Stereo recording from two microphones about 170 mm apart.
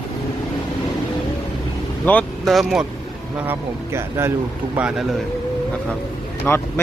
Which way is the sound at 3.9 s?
15° right (ahead or behind).